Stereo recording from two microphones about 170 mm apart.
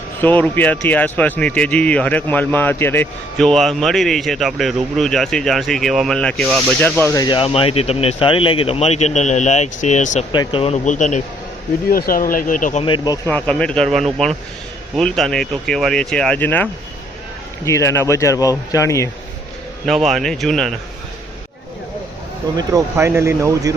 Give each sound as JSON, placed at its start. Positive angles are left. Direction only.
{"t": 0.2, "sound": "speech", "side_deg": 10}
{"t": 7.0, "sound": "speech", "side_deg": 20}
{"t": 10.3, "sound": "speech", "side_deg": 30}
{"t": 11.9, "sound": "speech", "side_deg": 60}
{"t": 12.8, "sound": "speech", "side_deg": 30}
{"t": 13.2, "sound": "speech", "side_deg": 10}
{"t": 17.7, "sound": "speech", "side_deg": 15}
{"t": 19.8, "sound": "speech", "side_deg": 0}
{"t": 22.5, "sound": "speech", "side_deg": -15}